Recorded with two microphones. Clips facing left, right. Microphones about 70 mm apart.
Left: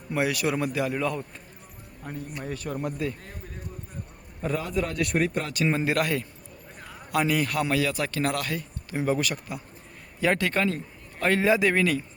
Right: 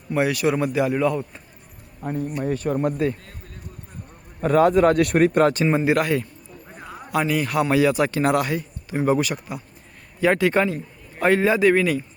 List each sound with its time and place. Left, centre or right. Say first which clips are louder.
0.1 s speech: right 5 dB; centre
2.0 s a man's voice: right 10 dB; right
4.4 s a man's voice: right 12 dB; right
5.6 s speech: right 5 dB; centre
7.7 s speech: right 7 dB; right; by 10.5 s centre
10.5 s speech: right 5 dB; centre